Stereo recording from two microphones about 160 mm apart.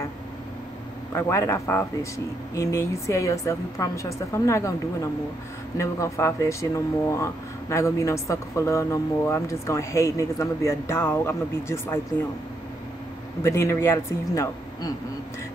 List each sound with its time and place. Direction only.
1.1 s speech: 15° left (ahead or behind)
5.8 s speech: 20° left (ahead or behind)
13.4 s speech: 15° left (ahead or behind)